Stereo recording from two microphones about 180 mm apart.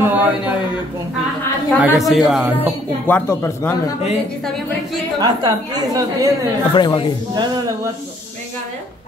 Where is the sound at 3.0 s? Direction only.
15° left (ahead or behind).